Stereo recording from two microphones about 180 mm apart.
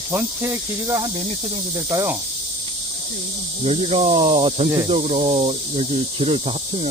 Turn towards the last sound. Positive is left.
turn(degrees=-35)  # may be behind; listen again after turning